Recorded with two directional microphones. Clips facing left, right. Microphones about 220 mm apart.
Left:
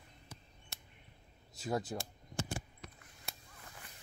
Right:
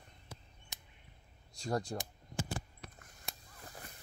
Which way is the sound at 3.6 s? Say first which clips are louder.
Right 5 dB; 40° right (ahead or behind).